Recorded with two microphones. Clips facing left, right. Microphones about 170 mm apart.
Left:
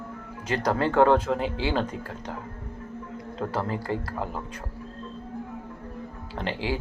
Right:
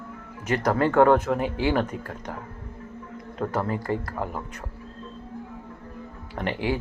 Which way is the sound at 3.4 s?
10° left (ahead or behind).